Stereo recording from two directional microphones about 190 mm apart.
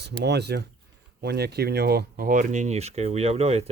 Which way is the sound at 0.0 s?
60° right (ahead or behind).